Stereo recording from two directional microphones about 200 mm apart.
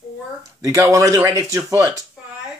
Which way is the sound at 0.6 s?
15° right (ahead or behind).